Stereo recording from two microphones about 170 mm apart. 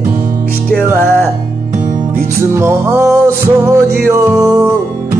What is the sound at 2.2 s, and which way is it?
Music, 15° right (ahead or behind).